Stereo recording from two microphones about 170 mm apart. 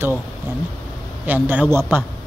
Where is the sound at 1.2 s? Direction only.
10° right (ahead or behind).